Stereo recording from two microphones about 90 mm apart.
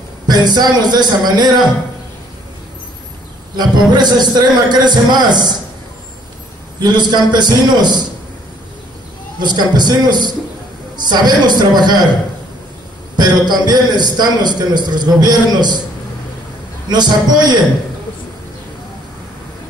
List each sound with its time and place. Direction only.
0.3 s a man's voice: 50° right (ahead or behind)
3.9 s a man's voice: 50° right (ahead or behind)
6.8 s a man's voice: 55° right (ahead or behind)
9.4 s a man's voice: 55° right (ahead or behind)
13.1 s a man's voice: 50° right (ahead or behind)
16.9 s a man's voice: 50° right (ahead or behind)